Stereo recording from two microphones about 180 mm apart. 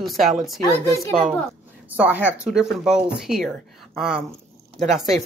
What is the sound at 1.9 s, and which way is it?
Speech, 10° right (ahead or behind).